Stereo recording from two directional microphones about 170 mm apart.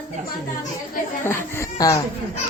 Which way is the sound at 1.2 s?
15° left (ahead or behind).